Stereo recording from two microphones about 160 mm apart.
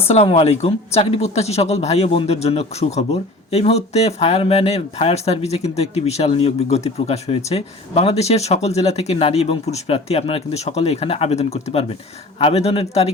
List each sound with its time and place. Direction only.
0.1 s speech: 40° left (ahead or behind)